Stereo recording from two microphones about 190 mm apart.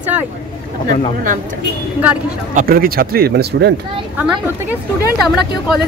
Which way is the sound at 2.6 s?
50° right (ahead or behind).